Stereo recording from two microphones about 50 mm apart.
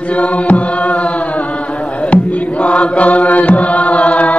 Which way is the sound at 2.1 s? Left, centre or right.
Left.